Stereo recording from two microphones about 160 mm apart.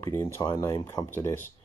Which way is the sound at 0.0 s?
15° left (ahead or behind).